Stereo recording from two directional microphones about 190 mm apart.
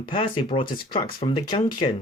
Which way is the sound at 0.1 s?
25° left (ahead or behind).